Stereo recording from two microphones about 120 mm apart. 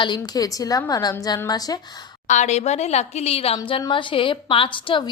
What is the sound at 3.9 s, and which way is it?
A woman's voice, 45° left (ahead or behind).